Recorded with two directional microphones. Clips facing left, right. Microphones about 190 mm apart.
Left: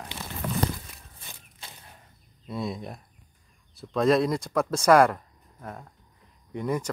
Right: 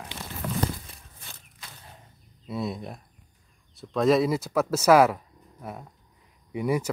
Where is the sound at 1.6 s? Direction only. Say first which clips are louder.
Left 1 dB; 30° left (ahead or behind).